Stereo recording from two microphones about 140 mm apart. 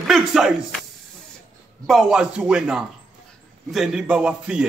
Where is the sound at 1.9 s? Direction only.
5° right (ahead or behind).